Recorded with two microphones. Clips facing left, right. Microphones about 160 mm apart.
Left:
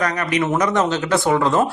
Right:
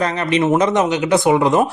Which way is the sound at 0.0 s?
25° right (ahead or behind).